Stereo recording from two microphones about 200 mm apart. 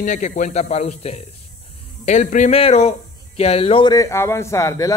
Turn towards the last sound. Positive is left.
turn(degrees=15)  # may be behind; listen again after turning